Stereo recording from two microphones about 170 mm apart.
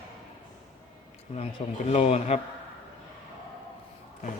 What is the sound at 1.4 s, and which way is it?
Speech, 35° left (ahead or behind).